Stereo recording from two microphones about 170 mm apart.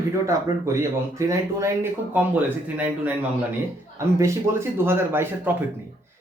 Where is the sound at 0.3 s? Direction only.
15° right (ahead or behind).